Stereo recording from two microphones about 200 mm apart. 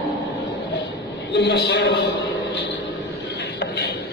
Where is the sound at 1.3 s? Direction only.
55° left (ahead or behind).